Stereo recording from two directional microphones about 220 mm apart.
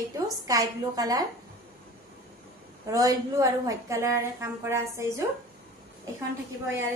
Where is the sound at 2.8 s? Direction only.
15° right (ahead or behind).